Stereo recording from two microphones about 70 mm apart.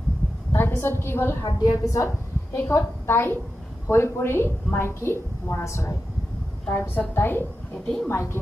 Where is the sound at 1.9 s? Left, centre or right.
Left.